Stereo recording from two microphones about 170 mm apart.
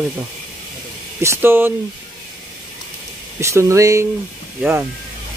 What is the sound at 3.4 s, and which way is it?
Speech, 15° right (ahead or behind).